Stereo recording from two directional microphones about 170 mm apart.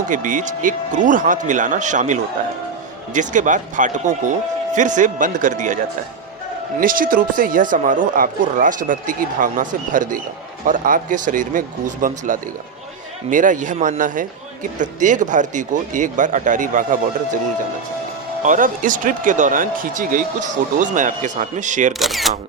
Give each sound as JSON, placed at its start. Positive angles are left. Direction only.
{"t": 0.1, "sound": "a man's voice", "side_deg": -50}
{"t": 18.4, "sound": "a man's voice", "side_deg": -50}
{"t": 21.9, "sound": "speech", "side_deg": 0}